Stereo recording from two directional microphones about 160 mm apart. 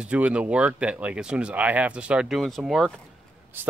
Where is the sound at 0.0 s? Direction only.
5° right (ahead or behind).